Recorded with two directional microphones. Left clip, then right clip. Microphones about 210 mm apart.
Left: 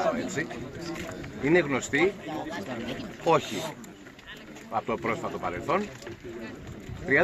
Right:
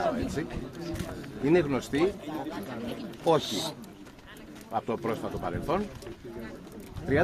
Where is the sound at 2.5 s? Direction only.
55° left (ahead or behind).